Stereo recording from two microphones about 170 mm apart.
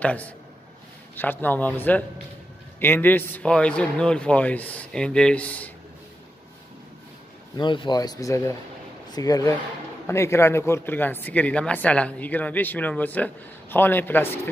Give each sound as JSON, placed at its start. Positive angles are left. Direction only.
{"t": 0.0, "sound": "speech", "side_deg": 10}
{"t": 7.5, "sound": "speech", "side_deg": 25}